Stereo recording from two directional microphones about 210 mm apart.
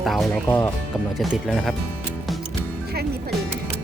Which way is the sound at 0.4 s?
15° left (ahead or behind).